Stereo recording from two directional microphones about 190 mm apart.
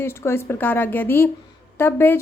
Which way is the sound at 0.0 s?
15° left (ahead or behind).